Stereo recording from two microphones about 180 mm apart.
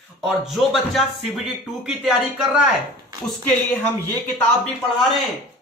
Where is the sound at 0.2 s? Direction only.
Centre (ahead or behind).